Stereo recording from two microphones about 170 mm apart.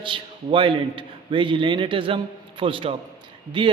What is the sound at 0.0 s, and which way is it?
A man's voice, 30° right (ahead or behind).